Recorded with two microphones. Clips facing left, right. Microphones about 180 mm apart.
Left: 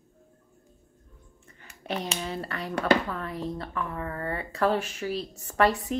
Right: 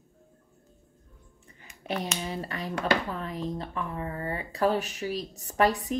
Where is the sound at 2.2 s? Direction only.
15° right (ahead or behind).